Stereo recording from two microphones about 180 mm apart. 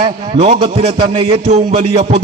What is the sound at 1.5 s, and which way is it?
Speech, 40° right (ahead or behind).